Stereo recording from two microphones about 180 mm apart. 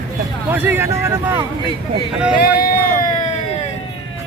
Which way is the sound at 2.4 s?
55° left (ahead or behind).